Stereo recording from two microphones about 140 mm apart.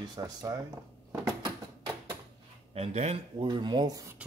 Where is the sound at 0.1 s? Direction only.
30° right (ahead or behind).